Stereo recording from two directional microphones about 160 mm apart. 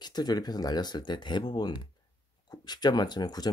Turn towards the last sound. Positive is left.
turn(degrees=25)  # may be behind; listen again after turning